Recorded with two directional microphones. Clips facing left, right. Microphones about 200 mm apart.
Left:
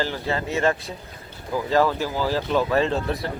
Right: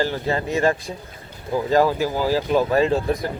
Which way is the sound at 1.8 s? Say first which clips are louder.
Right 1 dB; 15° right (ahead or behind).